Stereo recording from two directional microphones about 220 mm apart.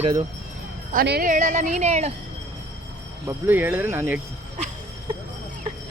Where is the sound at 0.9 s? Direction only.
45° right (ahead or behind).